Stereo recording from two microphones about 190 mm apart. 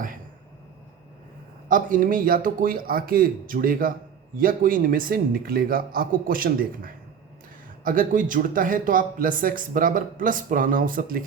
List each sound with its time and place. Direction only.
1.6 s speech: 45° right (ahead or behind)